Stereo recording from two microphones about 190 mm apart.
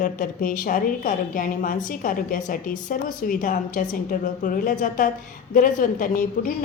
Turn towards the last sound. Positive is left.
turn(degrees=45)  # may be behind; listen again after turning